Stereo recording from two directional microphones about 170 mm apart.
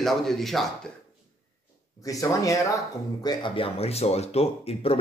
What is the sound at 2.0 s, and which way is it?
Speech, 20° left (ahead or behind).